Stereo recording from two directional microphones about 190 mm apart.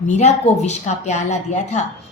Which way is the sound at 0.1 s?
40° left (ahead or behind).